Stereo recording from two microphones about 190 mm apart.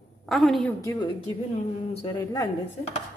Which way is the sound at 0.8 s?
15° left (ahead or behind).